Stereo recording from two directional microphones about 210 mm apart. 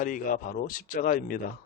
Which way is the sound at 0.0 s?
40° left (ahead or behind).